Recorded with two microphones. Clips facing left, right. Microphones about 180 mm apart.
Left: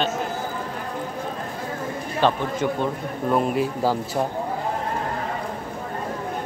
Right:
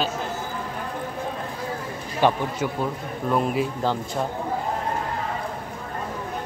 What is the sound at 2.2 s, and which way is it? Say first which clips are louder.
Speech: even; 5° right (ahead or behind).